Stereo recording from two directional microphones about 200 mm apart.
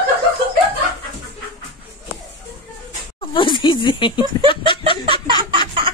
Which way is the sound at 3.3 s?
25° left (ahead or behind).